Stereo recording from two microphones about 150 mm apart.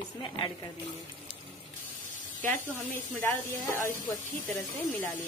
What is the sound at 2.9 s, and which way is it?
Speech, 15° left (ahead or behind).